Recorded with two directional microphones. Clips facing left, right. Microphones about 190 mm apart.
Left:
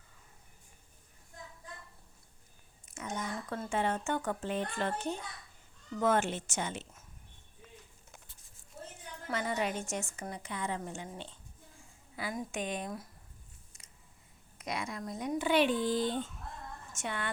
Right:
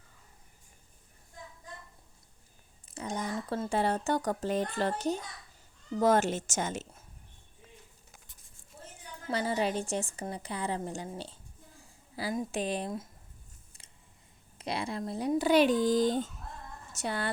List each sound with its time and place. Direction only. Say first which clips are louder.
2.8 s a woman's voice: right 3 dB; 30° right (ahead or behind)
9.2 s a woman's voice: right 4 dB; 30° right (ahead or behind)
12.1 s a woman's voice: right 5 dB; 30° right (ahead or behind)
14.6 s a woman's voice: right 4 dB; 30° right (ahead or behind)